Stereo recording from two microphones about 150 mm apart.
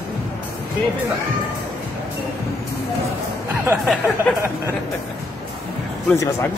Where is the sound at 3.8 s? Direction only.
Centre (ahead or behind).